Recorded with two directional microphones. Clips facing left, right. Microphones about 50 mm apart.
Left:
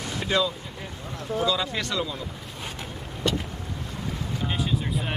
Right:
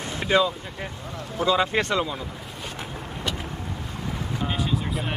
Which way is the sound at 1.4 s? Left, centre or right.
Right.